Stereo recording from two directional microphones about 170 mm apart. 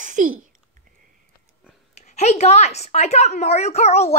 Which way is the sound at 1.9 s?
40° left (ahead or behind).